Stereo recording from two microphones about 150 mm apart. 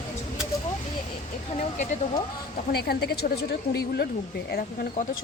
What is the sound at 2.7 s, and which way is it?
A woman's voice, 90° left.